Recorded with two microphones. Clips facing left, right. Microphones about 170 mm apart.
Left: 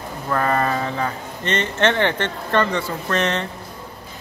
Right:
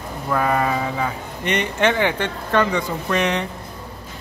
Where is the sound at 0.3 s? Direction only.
5° right (ahead or behind).